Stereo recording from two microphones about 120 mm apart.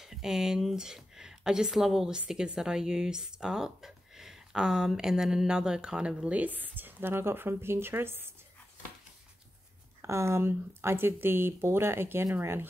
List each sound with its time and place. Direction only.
0.0 s speech: 5° right (ahead or behind); by 8.3 s 20° right (ahead or behind)
10.0 s speech: 25° right (ahead or behind)